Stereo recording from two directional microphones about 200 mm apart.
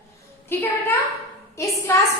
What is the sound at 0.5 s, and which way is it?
Speech, 10° left (ahead or behind).